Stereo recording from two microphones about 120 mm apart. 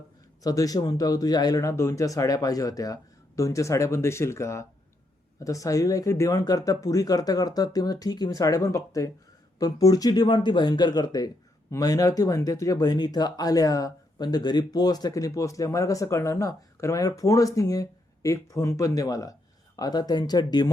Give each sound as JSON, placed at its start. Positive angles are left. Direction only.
{"t": 0.4, "sound": "speech", "side_deg": 30}